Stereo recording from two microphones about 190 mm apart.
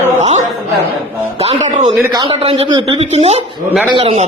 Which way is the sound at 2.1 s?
25° right (ahead or behind).